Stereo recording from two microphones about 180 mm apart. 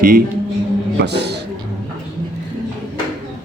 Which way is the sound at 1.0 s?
70° right (ahead or behind).